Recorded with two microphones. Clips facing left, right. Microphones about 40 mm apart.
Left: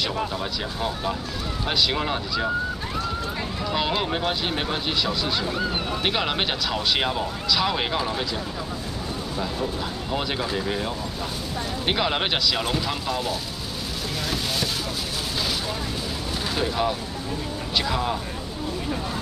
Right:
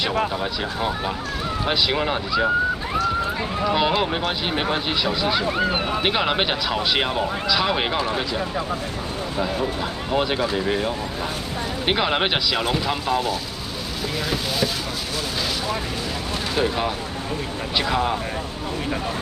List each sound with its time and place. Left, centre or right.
0.4 s speech: centre
3.7 s speech: centre
5.6 s speech: right
6.0 s speech: centre
10.1 s speech: centre
16.5 s speech: centre